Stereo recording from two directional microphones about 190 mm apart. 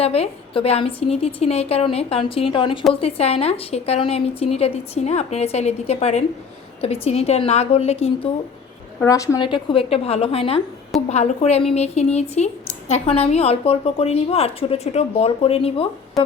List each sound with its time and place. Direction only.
0.0 s a woman's voice: 30° left (ahead or behind)
9.0 s a woman's voice: 15° left (ahead or behind)